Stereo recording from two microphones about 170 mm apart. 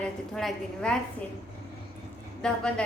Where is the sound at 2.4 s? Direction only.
5° left (ahead or behind).